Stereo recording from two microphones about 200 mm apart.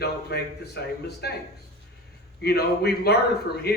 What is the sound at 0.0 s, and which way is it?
A man's voice, 55° left (ahead or behind).